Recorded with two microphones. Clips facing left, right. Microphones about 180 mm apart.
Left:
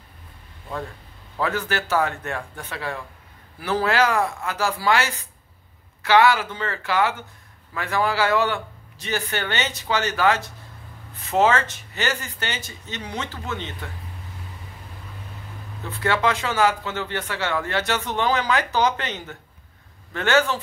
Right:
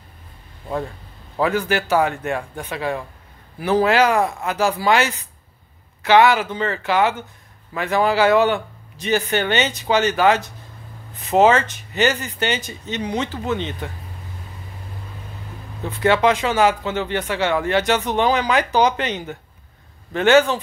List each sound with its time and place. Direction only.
1.4 s a man's voice: 15° right (ahead or behind)
16.0 s a man's voice: 20° right (ahead or behind)